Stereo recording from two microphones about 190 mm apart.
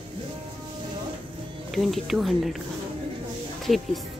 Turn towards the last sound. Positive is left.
turn(degrees=0)  # may be behind; listen again after turning